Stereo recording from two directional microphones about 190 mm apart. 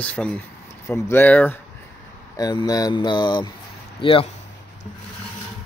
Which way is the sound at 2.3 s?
20° left (ahead or behind).